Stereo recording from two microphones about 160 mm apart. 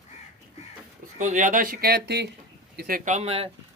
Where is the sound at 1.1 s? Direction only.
50° right (ahead or behind); by 2.2 s 85° right.